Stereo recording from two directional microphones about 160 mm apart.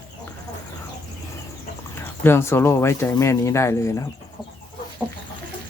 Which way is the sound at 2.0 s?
15° left (ahead or behind).